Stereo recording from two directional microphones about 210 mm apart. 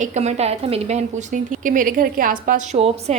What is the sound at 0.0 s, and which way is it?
A woman's voice, 35° right (ahead or behind).